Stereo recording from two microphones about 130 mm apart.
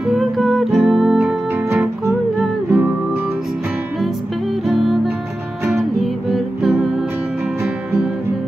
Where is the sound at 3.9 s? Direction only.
Centre (ahead or behind).